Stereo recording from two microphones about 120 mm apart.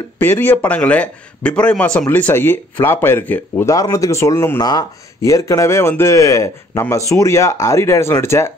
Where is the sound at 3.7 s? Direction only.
30° left (ahead or behind).